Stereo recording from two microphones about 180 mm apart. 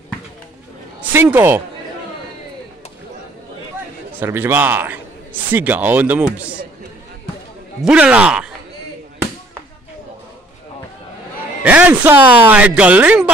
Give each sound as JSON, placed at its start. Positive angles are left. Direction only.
{"t": 1.1, "sound": "a man's voice", "side_deg": -10}
{"t": 4.2, "sound": "a man's voice", "side_deg": -10}
{"t": 7.8, "sound": "a man's voice", "side_deg": -5}
{"t": 11.6, "sound": "a man's voice", "side_deg": -10}